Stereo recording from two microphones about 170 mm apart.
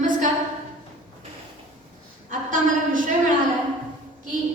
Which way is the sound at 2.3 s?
50° right (ahead or behind).